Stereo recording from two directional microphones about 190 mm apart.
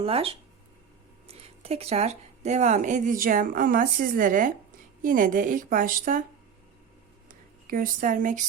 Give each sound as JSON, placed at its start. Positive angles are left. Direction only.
{"t": 0.0, "sound": "speech", "side_deg": -30}
{"t": 7.3, "sound": "speech", "side_deg": -45}